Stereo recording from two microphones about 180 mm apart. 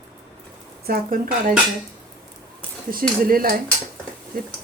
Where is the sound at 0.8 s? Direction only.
55° right (ahead or behind).